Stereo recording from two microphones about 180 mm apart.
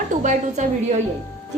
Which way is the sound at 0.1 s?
45° right (ahead or behind).